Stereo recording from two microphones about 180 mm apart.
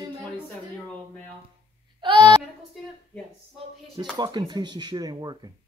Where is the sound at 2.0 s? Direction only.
25° right (ahead or behind).